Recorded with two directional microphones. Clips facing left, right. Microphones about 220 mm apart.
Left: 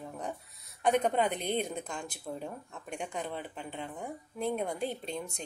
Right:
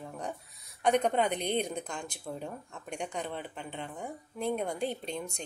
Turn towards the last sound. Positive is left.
turn(degrees=5)  # may be behind; listen again after turning